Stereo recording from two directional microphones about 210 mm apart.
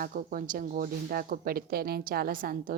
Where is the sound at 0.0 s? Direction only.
40° right (ahead or behind).